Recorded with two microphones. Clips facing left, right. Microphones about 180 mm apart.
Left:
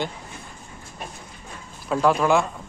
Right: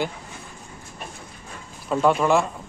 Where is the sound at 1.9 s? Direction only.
Centre (ahead or behind).